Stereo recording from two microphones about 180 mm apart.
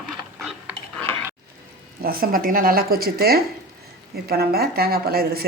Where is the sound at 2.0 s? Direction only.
55° right (ahead or behind).